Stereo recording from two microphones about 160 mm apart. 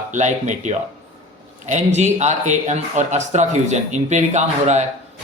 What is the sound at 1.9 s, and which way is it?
Speech, 45° right (ahead or behind).